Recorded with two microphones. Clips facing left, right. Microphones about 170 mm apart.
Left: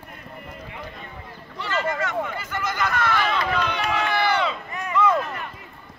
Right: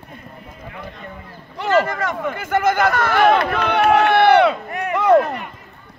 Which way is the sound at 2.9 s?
55° right (ahead or behind).